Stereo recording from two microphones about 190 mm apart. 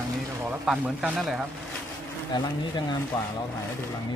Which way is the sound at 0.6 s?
5° right (ahead or behind).